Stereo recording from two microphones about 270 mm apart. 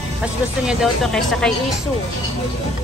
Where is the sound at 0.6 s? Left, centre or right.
Centre.